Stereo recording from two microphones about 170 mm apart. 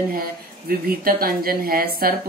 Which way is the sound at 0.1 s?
60° right (ahead or behind).